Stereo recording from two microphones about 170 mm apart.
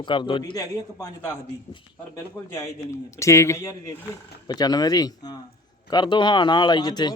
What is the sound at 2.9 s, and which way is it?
A man's voice, 15° left (ahead or behind).